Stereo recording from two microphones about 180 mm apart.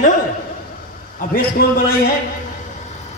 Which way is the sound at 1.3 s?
55° left (ahead or behind).